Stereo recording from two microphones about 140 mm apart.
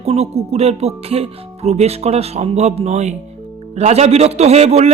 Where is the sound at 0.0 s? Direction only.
50° right (ahead or behind).